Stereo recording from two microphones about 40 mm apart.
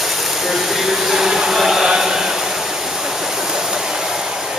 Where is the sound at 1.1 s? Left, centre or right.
Centre.